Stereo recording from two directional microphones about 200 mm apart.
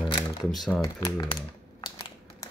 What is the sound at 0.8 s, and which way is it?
Speech, 20° left (ahead or behind).